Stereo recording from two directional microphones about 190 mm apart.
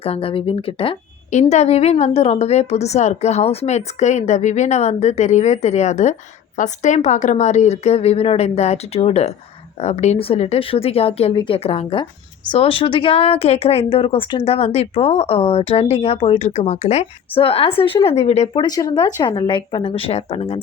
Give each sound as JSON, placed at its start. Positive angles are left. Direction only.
{"t": 0.0, "sound": "speech", "side_deg": 30}
{"t": 18.6, "sound": "speech", "side_deg": 20}